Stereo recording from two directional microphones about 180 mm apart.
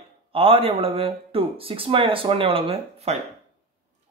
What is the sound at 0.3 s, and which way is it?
Speech, 30° right (ahead or behind).